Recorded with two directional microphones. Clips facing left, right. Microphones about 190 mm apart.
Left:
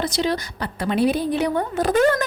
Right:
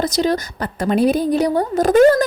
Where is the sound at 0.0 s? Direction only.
40° right (ahead or behind).